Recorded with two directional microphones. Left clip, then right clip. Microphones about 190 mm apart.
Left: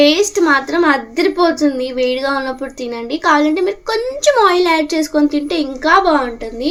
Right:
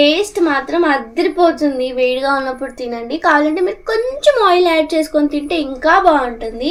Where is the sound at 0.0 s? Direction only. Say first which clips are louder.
Left 1 dB; 30° left (ahead or behind).